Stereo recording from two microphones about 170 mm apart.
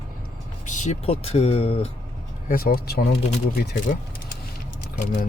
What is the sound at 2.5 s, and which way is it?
Speech, 60° left (ahead or behind).